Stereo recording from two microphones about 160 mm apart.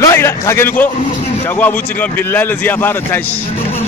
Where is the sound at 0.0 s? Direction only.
20° left (ahead or behind).